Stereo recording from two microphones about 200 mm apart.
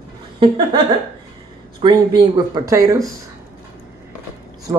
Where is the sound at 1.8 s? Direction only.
20° right (ahead or behind).